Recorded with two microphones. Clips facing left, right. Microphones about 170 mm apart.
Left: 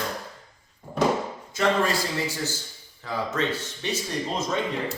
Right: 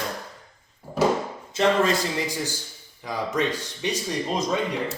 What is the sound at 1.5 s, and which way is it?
Speech, 20° right (ahead or behind).